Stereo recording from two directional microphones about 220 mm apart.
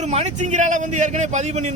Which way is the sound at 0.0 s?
30° right (ahead or behind).